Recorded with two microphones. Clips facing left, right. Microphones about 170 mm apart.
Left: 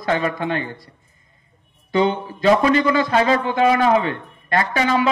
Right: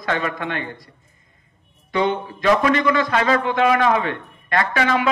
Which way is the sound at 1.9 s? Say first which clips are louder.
Left 2 dB; 30° left (ahead or behind).